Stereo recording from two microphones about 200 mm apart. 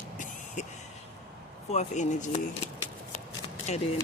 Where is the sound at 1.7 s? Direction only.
35° left (ahead or behind).